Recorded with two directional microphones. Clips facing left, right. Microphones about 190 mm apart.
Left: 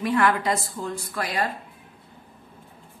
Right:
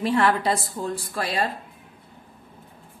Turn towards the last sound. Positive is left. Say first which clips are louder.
# right 1 dB
turn(degrees=-30)  # may be behind; listen again after turning